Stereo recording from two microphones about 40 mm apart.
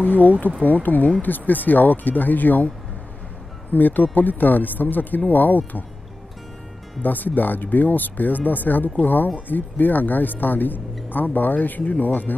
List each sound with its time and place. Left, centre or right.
0.0 s speech: left
3.7 s speech: left
7.0 s speech: left